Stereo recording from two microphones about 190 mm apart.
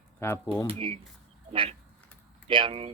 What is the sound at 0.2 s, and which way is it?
Speech, 15° left (ahead or behind).